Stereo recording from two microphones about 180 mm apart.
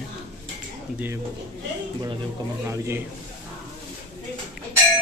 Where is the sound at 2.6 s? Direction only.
15° right (ahead or behind).